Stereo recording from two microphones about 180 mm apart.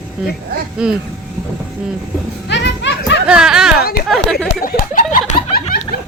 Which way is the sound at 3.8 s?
60° left (ahead or behind).